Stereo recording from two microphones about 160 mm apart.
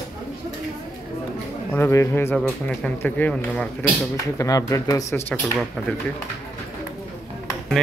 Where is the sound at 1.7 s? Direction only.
15° left (ahead or behind).